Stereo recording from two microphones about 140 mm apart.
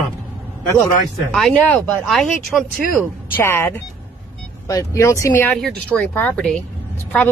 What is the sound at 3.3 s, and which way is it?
Speech, 15° left (ahead or behind).